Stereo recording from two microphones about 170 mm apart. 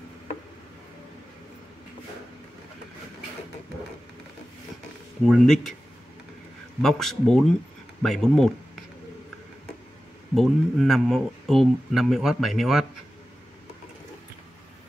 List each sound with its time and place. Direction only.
5.2 s speech: centre (ahead or behind)
6.8 s speech: centre (ahead or behind)
10.3 s speech: centre (ahead or behind)